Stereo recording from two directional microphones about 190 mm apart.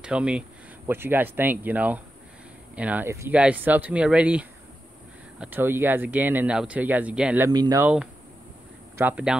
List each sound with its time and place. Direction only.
0.0 s speech: 5° right (ahead or behind)
7.5 s speech: 20° right (ahead or behind)
7.8 s speech: 5° right (ahead or behind)